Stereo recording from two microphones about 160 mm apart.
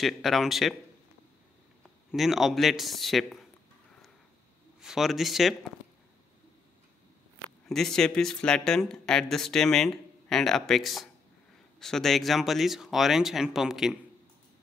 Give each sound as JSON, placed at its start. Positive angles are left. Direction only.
{"t": 0.0, "sound": "speech", "side_deg": 0}
{"t": 2.0, "sound": "speech", "side_deg": 0}
{"t": 4.7, "sound": "speech", "side_deg": 0}
{"t": 7.6, "sound": "speech", "side_deg": 0}